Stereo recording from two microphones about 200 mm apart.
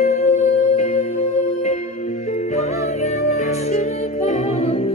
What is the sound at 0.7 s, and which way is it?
Music, 35° left (ahead or behind).